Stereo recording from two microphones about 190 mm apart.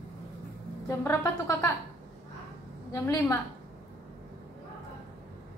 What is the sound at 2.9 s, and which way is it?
Speech, 15° left (ahead or behind).